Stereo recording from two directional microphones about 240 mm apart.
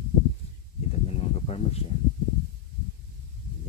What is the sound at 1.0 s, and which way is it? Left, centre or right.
Snake, left.